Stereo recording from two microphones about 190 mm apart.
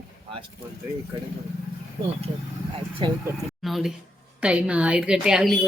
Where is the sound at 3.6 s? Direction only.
Centre (ahead or behind).